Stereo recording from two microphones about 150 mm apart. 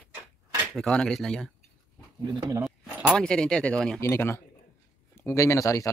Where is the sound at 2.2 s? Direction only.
20° right (ahead or behind).